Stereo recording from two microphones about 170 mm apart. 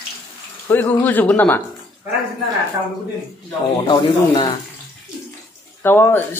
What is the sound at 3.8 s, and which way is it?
Speech, 25° left (ahead or behind).